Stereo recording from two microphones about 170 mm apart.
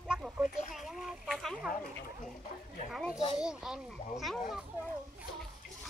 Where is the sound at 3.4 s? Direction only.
5° right (ahead or behind).